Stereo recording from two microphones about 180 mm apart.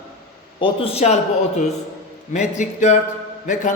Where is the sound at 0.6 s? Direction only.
30° left (ahead or behind).